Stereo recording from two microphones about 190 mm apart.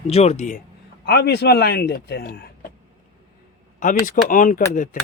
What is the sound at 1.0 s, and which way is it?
A man's voice, 55° left (ahead or behind).